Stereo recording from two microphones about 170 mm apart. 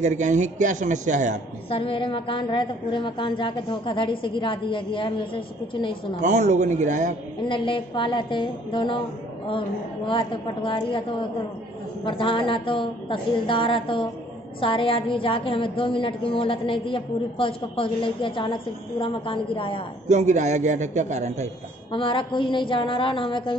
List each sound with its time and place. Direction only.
0.0 s a man's voice: 45° right (ahead or behind)
1.7 s a woman's voice: 30° left (ahead or behind)
6.2 s a man's voice: 45° right (ahead or behind)
7.4 s a woman's voice: 30° left (ahead or behind)
20.1 s a man's voice: 45° right (ahead or behind)
21.9 s a woman's voice: 30° left (ahead or behind)